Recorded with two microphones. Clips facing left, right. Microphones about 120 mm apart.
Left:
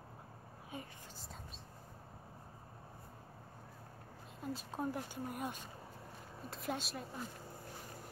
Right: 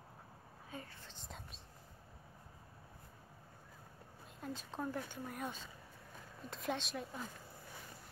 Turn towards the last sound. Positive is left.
turn(degrees=0)  # may be behind; listen again after turning